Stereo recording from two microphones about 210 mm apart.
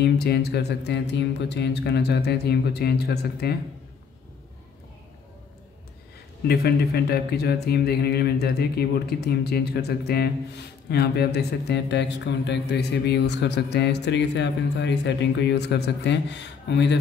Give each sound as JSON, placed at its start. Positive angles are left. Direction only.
{"t": 0.0, "sound": "speech", "side_deg": 50}
{"t": 6.4, "sound": "speech", "side_deg": 50}